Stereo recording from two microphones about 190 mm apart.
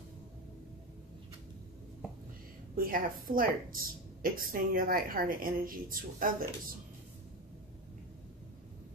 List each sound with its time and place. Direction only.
2.7 s a woman's voice: 50° right (ahead or behind)